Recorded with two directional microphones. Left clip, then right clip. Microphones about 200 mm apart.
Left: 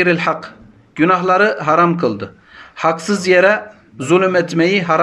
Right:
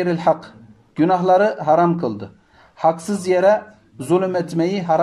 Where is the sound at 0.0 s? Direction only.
30° right (ahead or behind).